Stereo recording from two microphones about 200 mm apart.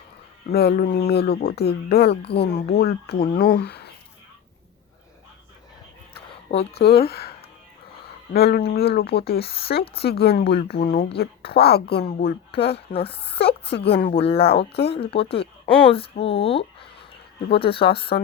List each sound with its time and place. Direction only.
0.5 s speech: 50° left (ahead or behind)
6.5 s speech: 30° left (ahead or behind)
6.7 s speech: 55° left (ahead or behind)
12.7 s speech: 30° left (ahead or behind)
13.7 s speech: 55° left (ahead or behind)
14.1 s speech: 30° left (ahead or behind)
14.6 s speech: 55° left (ahead or behind)
14.8 s speech: 30° left (ahead or behind)